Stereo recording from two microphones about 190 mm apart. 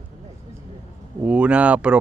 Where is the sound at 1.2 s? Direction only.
5° right (ahead or behind).